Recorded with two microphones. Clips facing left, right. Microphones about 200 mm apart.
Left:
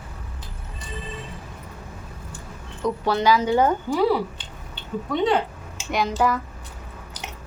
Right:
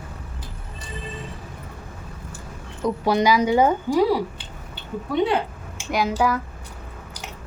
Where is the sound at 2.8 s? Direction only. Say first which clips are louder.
Right 1 dB; 15° right (ahead or behind).